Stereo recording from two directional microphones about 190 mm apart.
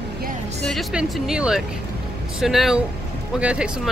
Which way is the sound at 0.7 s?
Centre (ahead or behind).